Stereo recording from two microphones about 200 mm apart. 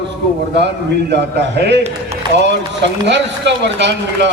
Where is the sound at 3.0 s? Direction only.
60° right (ahead or behind).